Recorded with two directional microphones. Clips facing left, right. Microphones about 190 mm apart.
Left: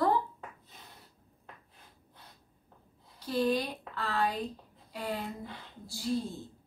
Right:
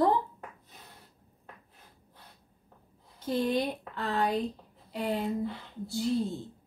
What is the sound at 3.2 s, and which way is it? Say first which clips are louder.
Speech: right 1 dB; 20° right (ahead or behind).